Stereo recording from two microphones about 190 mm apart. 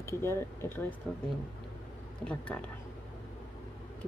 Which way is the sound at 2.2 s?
5° left (ahead or behind).